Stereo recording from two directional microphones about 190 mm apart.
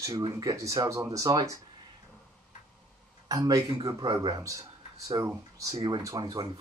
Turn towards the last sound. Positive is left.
turn(degrees=-20)  # may be behind; listen again after turning